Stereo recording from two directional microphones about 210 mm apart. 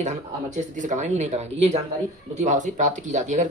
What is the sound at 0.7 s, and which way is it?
Speech, 35° right (ahead or behind).